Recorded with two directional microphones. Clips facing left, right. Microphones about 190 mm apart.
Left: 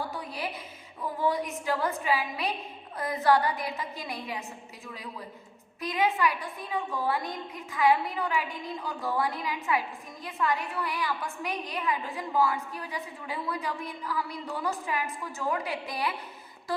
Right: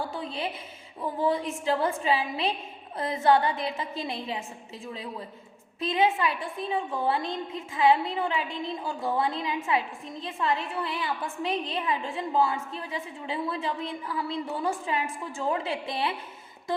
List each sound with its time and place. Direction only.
0.1 s a woman's voice: 25° right (ahead or behind)
5.8 s a woman's voice: 25° right (ahead or behind)